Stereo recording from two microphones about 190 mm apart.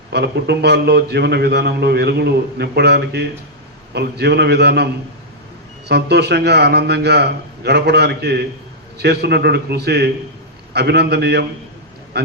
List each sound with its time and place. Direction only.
0.1 s a man's voice: 60° right (ahead or behind)
5.9 s a man's voice: 60° right (ahead or behind)